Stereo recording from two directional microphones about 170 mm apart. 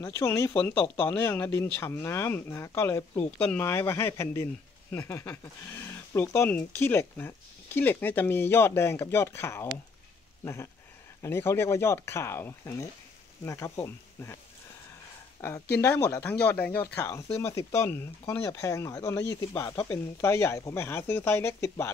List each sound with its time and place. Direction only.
0.0 s speech: 15° left (ahead or behind)